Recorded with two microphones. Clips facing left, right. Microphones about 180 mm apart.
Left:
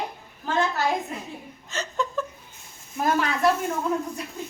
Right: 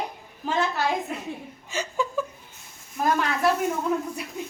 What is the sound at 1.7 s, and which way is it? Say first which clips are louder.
Chuckle: right 1 dB; 10° right (ahead or behind).